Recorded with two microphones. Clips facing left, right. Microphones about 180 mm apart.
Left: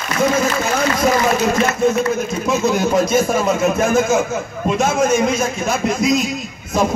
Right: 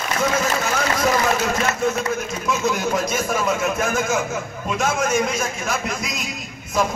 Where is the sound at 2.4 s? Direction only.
25° left (ahead or behind).